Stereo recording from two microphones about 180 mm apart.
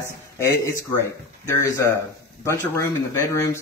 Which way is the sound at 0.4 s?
15° left (ahead or behind).